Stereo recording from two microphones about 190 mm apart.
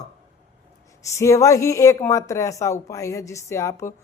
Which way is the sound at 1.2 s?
15° left (ahead or behind).